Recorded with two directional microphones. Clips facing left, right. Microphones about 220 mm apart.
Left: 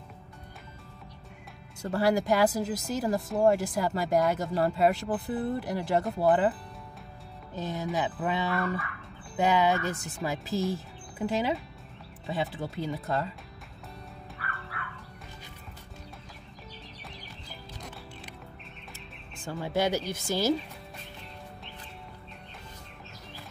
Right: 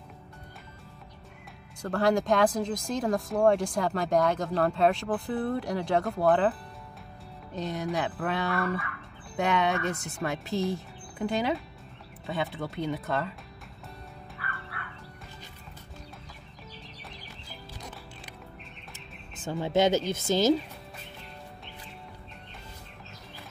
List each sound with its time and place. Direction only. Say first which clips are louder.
1.8 s speech: right 1 dB; 5° left (ahead or behind)
7.5 s speech: right 1 dB; centre (ahead or behind)
19.4 s speech: right 4 dB; 20° right (ahead or behind)